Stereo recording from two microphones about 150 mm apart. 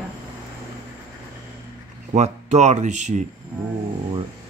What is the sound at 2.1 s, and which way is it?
Speech, 50° right (ahead or behind).